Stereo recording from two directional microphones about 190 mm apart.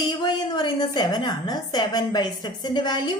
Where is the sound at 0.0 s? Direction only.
25° left (ahead or behind).